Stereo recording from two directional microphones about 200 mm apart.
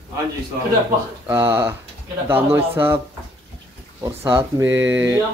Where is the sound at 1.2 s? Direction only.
15° right (ahead or behind).